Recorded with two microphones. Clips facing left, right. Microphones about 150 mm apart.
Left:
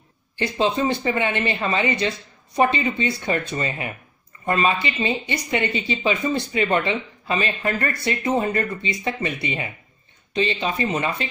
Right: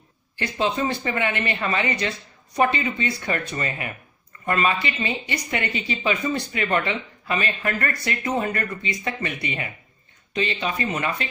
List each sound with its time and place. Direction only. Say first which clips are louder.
0.4 s speech: left 3 dB; 25° left (ahead or behind)